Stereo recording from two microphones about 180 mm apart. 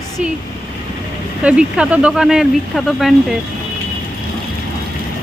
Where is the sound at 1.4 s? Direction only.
5° right (ahead or behind).